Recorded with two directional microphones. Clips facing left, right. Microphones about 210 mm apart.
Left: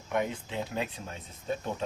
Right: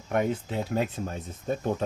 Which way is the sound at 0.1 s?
45° right (ahead or behind).